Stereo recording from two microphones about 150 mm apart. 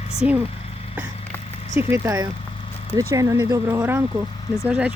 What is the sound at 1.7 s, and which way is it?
Speech, 15° right (ahead or behind).